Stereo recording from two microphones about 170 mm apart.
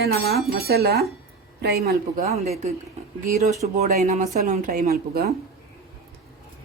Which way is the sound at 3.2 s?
20° right (ahead or behind).